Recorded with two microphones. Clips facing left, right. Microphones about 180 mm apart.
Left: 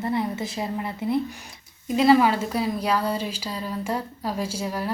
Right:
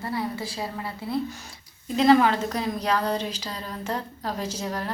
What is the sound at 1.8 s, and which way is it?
A woman's voice, 10° left (ahead or behind).